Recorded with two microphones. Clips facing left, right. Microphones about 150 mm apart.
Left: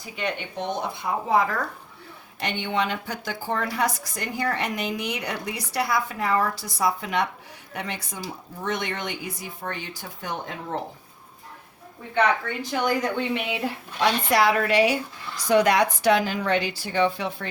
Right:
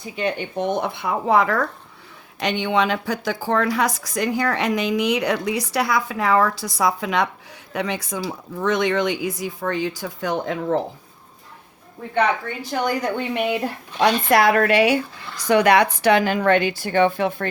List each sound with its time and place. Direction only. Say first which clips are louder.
0.0 s speech: right 5 dB; 30° right (ahead or behind)
0.5 s speech: right 6 dB; 55° right (ahead or behind); by 1.6 s 75° right (ahead or behind)
2.4 s a woman's voice: right 6 dB; 90° right
13.1 s a woman's voice: right 4 dB; 50° right (ahead or behind)